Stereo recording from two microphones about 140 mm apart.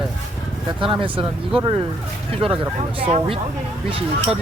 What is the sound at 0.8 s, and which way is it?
Speech, 40° right (ahead or behind).